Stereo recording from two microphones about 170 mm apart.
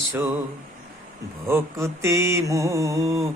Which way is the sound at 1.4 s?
15° right (ahead or behind).